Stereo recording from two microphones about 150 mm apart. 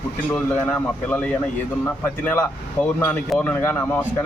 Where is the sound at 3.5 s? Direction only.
15° left (ahead or behind).